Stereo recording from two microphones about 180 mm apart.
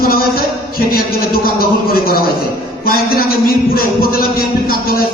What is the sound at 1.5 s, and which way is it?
Speech, 55° left (ahead or behind).